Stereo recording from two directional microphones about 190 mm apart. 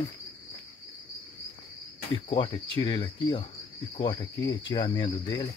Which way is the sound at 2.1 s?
25° left (ahead or behind).